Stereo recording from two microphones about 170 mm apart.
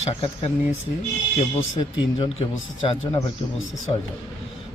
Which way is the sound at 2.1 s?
30° left (ahead or behind).